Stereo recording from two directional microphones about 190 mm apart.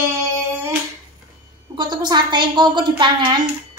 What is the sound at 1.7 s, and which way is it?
A woman's voice, 25° right (ahead or behind).